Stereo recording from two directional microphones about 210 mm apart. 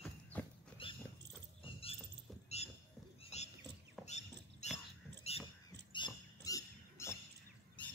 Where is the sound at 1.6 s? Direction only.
25° left (ahead or behind).